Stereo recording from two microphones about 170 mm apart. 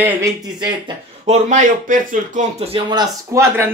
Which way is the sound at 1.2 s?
40° right (ahead or behind).